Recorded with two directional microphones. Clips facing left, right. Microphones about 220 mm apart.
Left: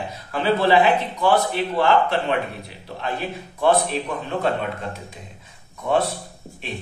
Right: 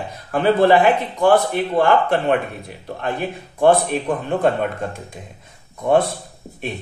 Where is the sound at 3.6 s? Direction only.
50° right (ahead or behind).